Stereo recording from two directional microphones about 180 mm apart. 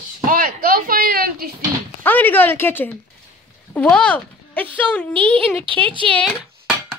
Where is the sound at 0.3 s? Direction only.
50° right (ahead or behind).